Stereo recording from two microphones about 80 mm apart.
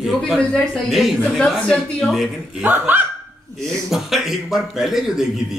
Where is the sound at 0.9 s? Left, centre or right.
Centre.